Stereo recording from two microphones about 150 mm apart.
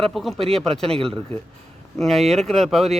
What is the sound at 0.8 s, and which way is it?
Speech, 40° right (ahead or behind).